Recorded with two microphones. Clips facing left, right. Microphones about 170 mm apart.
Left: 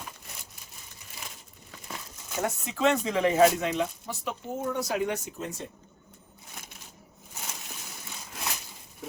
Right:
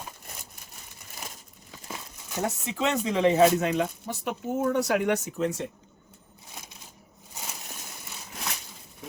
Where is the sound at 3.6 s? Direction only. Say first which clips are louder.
Right 2 dB; 50° right (ahead or behind); by 5.6 s 70° right (ahead or behind).